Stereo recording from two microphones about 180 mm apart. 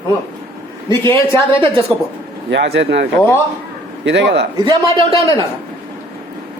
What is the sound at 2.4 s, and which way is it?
Speech, 70° right (ahead or behind).